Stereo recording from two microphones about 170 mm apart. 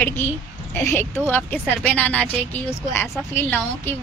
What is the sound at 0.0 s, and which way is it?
A woman's voice, 10° left (ahead or behind).